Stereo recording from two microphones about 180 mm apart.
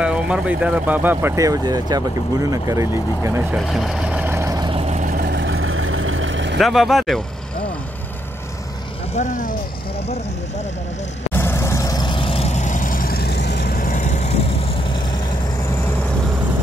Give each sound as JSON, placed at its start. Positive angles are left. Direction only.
{"t": 0.0, "sound": "speech", "side_deg": -5}
{"t": 3.5, "sound": "vehicle", "side_deg": 0}
{"t": 6.1, "sound": "vehicle", "side_deg": -90}
{"t": 6.6, "sound": "speech", "side_deg": 0}
{"t": 9.1, "sound": "speech", "side_deg": 40}
{"t": 11.3, "sound": "vehicle", "side_deg": 15}